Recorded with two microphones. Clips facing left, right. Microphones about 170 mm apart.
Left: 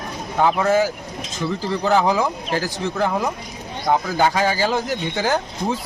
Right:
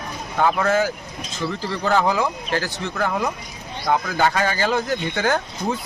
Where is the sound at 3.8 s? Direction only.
15° left (ahead or behind).